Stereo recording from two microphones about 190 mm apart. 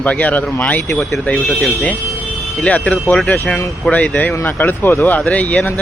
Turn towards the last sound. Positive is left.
turn(degrees=10)  # may be behind; listen again after turning